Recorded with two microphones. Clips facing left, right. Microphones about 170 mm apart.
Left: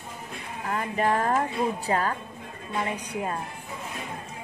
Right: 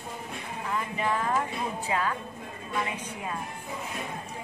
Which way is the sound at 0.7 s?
45° left (ahead or behind).